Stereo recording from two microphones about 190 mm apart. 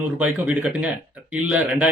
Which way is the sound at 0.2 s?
5° right (ahead or behind).